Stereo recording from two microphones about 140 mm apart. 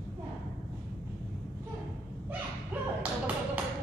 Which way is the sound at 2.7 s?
10° right (ahead or behind).